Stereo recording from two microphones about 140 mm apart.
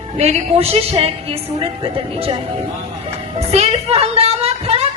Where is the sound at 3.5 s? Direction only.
50° right (ahead or behind).